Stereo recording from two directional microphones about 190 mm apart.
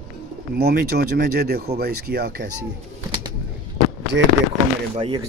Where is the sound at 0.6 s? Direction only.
55° right (ahead or behind).